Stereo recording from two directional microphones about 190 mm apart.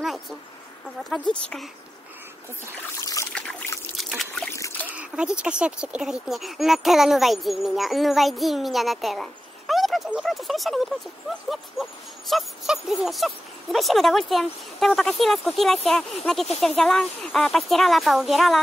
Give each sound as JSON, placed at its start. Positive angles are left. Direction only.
{"t": 1.1, "sound": "speech", "side_deg": 5}
{"t": 3.0, "sound": "trickle", "side_deg": 15}
{"t": 4.6, "sound": "splash", "side_deg": 15}
{"t": 4.8, "sound": "speech", "side_deg": -5}